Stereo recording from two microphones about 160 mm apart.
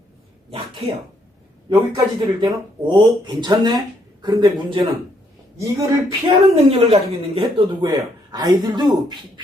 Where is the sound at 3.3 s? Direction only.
25° right (ahead or behind).